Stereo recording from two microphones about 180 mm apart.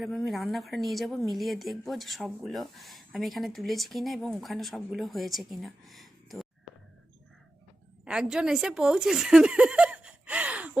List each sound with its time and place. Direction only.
0.0 s speech: centre (ahead or behind)
8.0 s speech: 5° right (ahead or behind)